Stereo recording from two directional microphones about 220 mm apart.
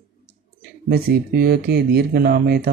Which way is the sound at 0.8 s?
45° right (ahead or behind).